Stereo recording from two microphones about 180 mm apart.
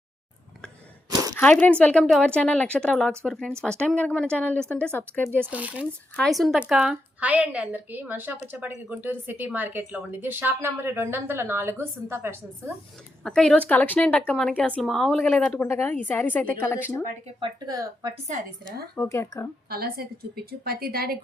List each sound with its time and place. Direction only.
1.4 s speech: 10° left (ahead or behind)
5.5 s a woman's voice: 10° right (ahead or behind)
13.2 s speech: 5° left (ahead or behind)
17.4 s speech: 20° right (ahead or behind)
18.9 s speech: 15° left (ahead or behind)
19.7 s a woman's voice: 60° right (ahead or behind)